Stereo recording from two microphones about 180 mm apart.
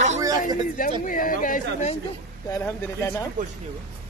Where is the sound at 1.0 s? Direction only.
50° left (ahead or behind).